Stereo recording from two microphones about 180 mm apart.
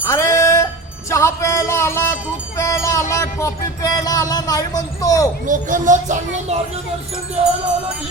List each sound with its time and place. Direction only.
0.0 s music: 15° left (ahead or behind)
5.5 s speech: 45° right (ahead or behind)